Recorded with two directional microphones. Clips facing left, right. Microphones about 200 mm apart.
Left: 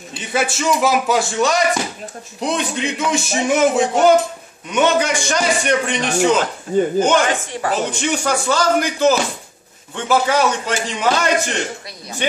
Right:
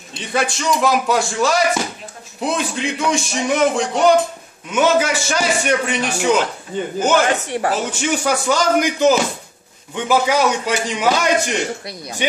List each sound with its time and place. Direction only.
0.1 s music: 5° left (ahead or behind)
7.3 s speech: 65° right (ahead or behind)
8.0 s speech: 5° right (ahead or behind)